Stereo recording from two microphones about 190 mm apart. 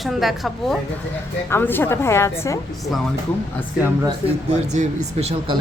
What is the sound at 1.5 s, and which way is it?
A woman's voice, 10° left (ahead or behind).